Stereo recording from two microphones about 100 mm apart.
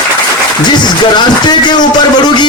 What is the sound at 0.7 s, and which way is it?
Speech, 45° left (ahead or behind).